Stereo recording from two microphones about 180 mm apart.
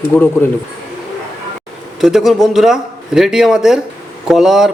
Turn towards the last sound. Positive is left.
turn(degrees=0)  # may be behind; listen again after turning